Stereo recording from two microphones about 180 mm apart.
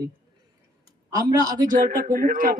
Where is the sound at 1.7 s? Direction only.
50° right (ahead or behind).